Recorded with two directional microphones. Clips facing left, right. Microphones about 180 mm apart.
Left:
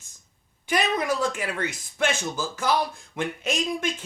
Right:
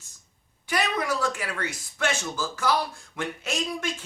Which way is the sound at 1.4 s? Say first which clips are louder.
Left 3 dB; 20° left (ahead or behind).